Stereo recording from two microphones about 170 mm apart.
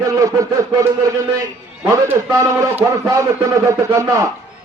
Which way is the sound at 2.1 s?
15° right (ahead or behind).